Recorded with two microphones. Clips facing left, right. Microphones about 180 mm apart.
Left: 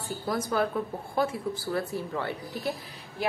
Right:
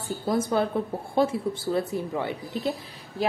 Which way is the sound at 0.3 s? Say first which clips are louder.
Right 4 dB; 25° right (ahead or behind).